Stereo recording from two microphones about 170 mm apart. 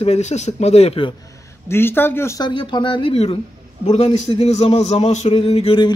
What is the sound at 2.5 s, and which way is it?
A man's voice, 30° left (ahead or behind).